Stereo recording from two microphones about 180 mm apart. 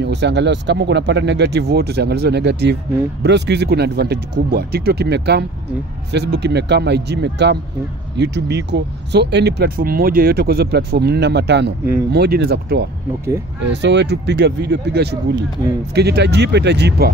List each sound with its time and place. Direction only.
0.0 s speech: 70° right (ahead or behind)
13.6 s speech: 80° right